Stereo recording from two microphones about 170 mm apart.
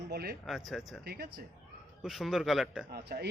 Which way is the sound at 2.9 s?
65° right (ahead or behind).